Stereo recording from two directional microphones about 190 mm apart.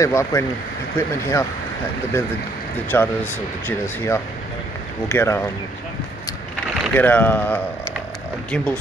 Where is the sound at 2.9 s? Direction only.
10° left (ahead or behind).